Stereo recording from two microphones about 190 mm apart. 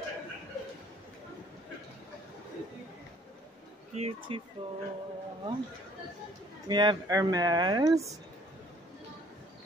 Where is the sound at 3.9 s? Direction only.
35° right (ahead or behind).